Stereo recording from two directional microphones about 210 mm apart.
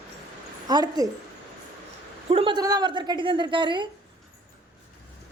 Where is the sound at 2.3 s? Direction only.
25° right (ahead or behind).